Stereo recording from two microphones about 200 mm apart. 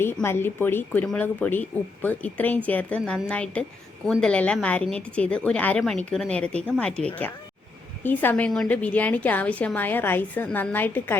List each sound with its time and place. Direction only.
0.0 s a woman's voice: 10° left (ahead or behind)